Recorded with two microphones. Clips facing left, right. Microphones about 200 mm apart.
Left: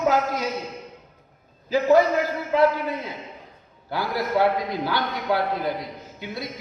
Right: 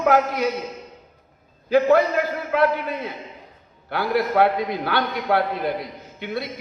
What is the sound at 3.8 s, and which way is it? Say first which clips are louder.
A man's voice: right 4 dB; 60° right (ahead or behind).